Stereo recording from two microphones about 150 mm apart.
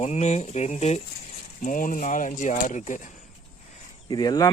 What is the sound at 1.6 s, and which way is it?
Speech, 60° left (ahead or behind).